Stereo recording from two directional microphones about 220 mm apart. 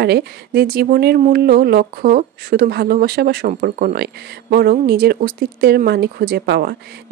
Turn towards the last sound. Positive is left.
turn(degrees=-45)  # may be behind; listen again after turning